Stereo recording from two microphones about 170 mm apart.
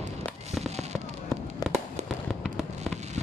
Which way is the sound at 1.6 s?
25° left (ahead or behind).